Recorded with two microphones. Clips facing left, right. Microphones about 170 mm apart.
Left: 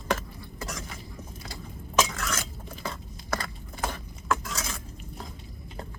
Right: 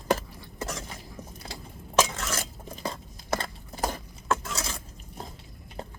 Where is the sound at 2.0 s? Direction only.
25° right (ahead or behind).